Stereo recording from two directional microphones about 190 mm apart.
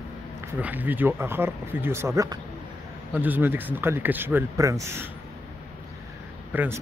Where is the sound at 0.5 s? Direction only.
10° right (ahead or behind).